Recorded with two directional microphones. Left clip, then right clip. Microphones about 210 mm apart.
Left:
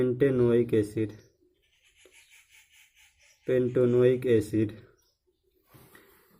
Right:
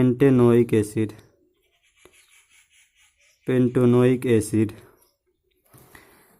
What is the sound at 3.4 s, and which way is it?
Speech, 40° right (ahead or behind).